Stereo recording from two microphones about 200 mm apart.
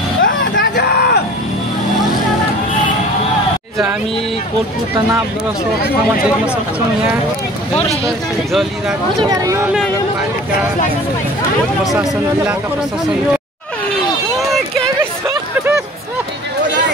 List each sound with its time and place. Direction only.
0.2 s vehicle: 60° left (ahead or behind)
5.8 s speech: 55° left (ahead or behind)
8.5 s speech: centre (ahead or behind)
9.2 s speech: 15° right (ahead or behind)
11.8 s speech: centre (ahead or behind)
15.0 s hubbub: 10° right (ahead or behind)